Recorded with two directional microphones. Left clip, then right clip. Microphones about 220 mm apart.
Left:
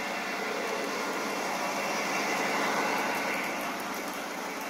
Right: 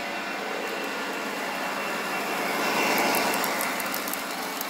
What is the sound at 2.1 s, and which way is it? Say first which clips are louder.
Vehicle: right 1 dB; 5° right (ahead or behind).